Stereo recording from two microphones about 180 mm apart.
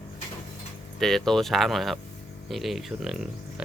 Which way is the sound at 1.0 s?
Centre (ahead or behind).